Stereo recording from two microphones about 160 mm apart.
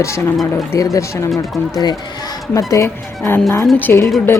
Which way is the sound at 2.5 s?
20° left (ahead or behind).